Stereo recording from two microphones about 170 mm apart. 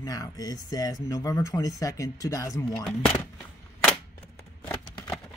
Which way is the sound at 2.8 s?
10° left (ahead or behind).